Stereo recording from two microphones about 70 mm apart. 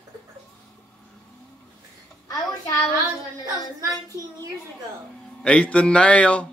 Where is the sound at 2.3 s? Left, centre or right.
Left.